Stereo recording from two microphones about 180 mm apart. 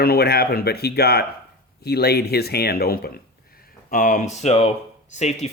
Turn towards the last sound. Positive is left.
turn(degrees=40)  # may be behind; listen again after turning